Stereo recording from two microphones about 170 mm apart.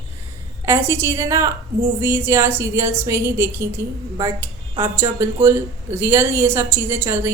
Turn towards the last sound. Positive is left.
turn(degrees=-15)  # may be behind; listen again after turning